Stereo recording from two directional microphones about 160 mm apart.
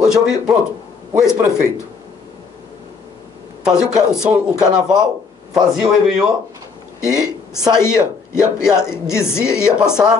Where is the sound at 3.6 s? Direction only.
5° right (ahead or behind).